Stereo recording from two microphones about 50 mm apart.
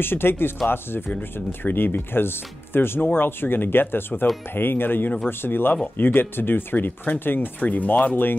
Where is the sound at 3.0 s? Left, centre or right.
Left.